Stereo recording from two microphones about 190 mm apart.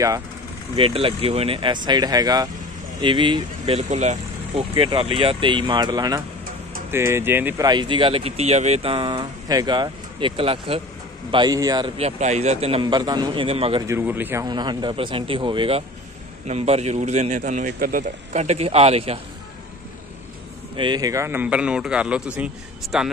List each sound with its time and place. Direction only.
0.7 s a man's voice: 30° right (ahead or behind); by 7.6 s 10° right (ahead or behind)
7.6 s speech: 25° right (ahead or behind)
12.0 s speech: 35° right (ahead or behind)
13.8 s a man's voice: 10° right (ahead or behind)
14.4 s speech: 25° right (ahead or behind)
20.7 s a man's voice: 25° right (ahead or behind); by 23.1 s 5° right (ahead or behind)